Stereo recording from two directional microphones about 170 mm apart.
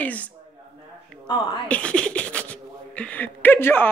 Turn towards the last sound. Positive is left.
turn(degrees=15)  # may be behind; listen again after turning